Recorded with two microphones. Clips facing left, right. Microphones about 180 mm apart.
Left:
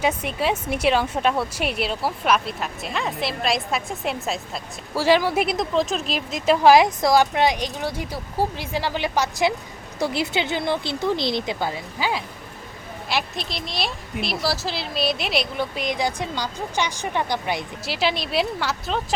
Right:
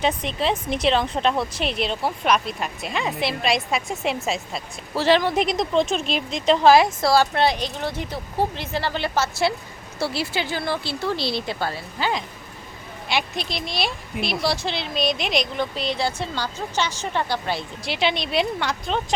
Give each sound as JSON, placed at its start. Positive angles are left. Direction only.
{"t": 0.0, "sound": "a woman's voice", "side_deg": 10}
{"t": 17.8, "sound": "a woman's voice", "side_deg": 5}